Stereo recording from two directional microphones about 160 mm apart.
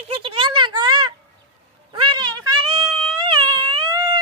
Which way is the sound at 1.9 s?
30° right (ahead or behind).